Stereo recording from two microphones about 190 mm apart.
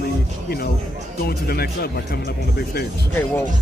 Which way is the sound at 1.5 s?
55° left (ahead or behind).